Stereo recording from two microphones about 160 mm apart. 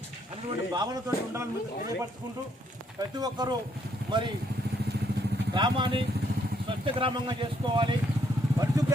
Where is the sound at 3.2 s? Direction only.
25° right (ahead or behind).